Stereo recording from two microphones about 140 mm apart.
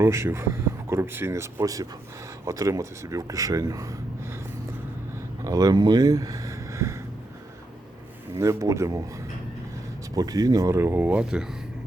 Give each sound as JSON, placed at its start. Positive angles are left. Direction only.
{"t": 0.0, "sound": "speech", "side_deg": -20}
{"t": 5.4, "sound": "speech", "side_deg": -25}
{"t": 8.4, "sound": "speech", "side_deg": -20}
{"t": 10.2, "sound": "speech", "side_deg": -25}